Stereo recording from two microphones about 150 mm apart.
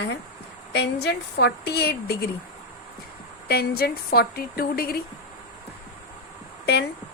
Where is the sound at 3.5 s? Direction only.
90° left.